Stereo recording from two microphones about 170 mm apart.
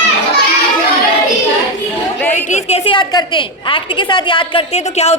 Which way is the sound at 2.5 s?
40° left (ahead or behind).